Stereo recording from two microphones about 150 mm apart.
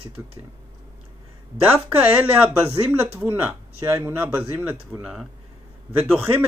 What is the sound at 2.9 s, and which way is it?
Speech, 10° right (ahead or behind).